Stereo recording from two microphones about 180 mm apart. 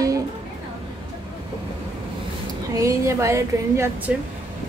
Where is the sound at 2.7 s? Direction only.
15° right (ahead or behind).